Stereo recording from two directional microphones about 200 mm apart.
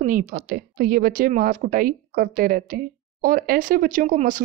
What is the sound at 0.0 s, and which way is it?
A woman's voice, 40° right (ahead or behind).